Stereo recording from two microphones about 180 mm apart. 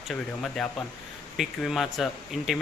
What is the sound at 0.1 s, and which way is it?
Speech, centre (ahead or behind).